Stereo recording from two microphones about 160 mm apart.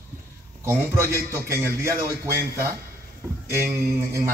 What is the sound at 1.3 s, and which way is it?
A man's voice, 15° right (ahead or behind).